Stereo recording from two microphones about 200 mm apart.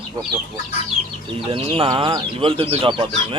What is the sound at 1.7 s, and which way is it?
Speech, 25° right (ahead or behind).